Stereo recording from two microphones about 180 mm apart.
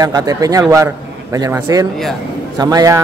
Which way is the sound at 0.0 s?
20° right (ahead or behind).